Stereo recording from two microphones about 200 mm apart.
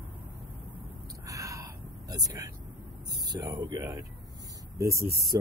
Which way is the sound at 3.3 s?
20° right (ahead or behind).